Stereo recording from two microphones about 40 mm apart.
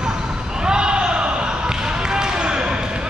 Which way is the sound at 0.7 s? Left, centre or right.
Right.